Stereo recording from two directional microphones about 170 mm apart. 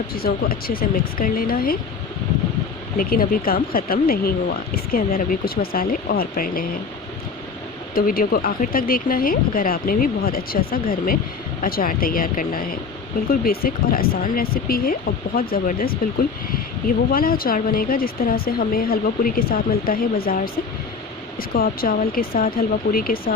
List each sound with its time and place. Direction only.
0.1 s speech: 60° left (ahead or behind)
3.0 s speech: 60° left (ahead or behind)
7.9 s speech: 55° left (ahead or behind)
17.1 s speech: 60° left (ahead or behind)
21.5 s speech: 60° left (ahead or behind)